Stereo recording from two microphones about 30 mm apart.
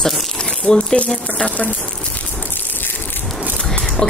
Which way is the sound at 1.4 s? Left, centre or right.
Left.